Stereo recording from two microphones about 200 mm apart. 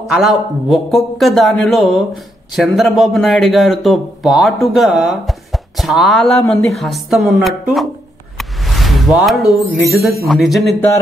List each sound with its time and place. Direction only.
0.0 s a man's voice: centre (ahead or behind)
8.4 s music: centre (ahead or behind)
9.8 s a man's voice: centre (ahead or behind)